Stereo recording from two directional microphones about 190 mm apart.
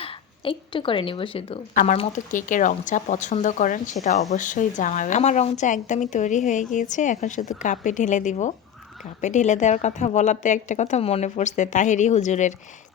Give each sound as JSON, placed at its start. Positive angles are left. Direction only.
{"t": 0.0, "sound": "a woman's voice", "side_deg": 30}
{"t": 1.7, "sound": "a woman's voice", "side_deg": 40}